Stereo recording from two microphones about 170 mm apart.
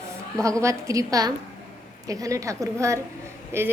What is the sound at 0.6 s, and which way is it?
A woman's voice, 15° right (ahead or behind).